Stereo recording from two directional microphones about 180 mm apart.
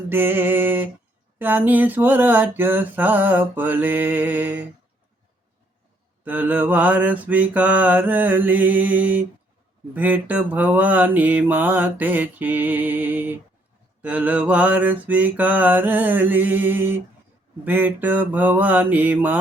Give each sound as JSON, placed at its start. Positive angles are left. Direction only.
{"t": 0.1, "sound": "mantra", "side_deg": -10}
{"t": 6.2, "sound": "mantra", "side_deg": -10}